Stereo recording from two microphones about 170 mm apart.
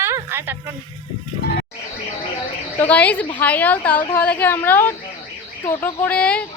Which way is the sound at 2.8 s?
10° left (ahead or behind).